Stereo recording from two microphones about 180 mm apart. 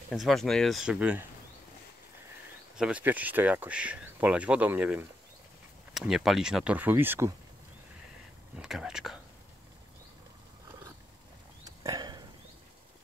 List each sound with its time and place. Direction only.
0.1 s speech: centre (ahead or behind)
2.7 s speech: 5° right (ahead or behind)
8.5 s speech: 5° right (ahead or behind)
11.6 s a sound: 20° right (ahead or behind)